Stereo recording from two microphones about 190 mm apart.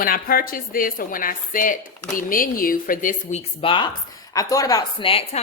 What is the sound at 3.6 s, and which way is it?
Speech, 25° left (ahead or behind).